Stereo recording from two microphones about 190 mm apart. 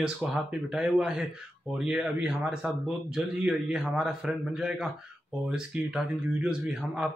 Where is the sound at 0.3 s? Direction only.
Centre (ahead or behind).